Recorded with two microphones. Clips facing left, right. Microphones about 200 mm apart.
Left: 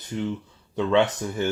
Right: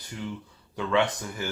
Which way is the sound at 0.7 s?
25° left (ahead or behind).